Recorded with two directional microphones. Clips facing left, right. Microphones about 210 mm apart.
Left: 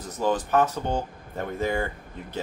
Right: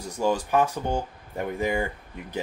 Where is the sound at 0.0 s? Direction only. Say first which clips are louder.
Even; 10° right (ahead or behind).